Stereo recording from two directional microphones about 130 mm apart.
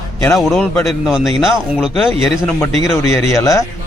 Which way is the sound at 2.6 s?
20° left (ahead or behind).